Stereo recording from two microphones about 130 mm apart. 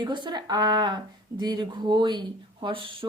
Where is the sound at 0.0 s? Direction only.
35° right (ahead or behind).